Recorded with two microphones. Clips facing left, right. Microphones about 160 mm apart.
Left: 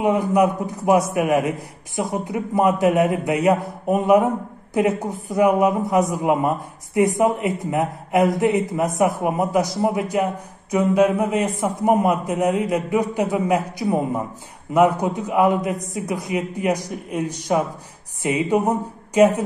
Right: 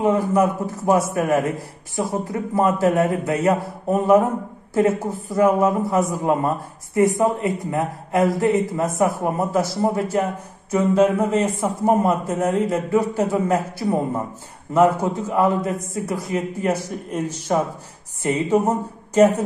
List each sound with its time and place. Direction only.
0.0 s a woman's voice: 15° left (ahead or behind)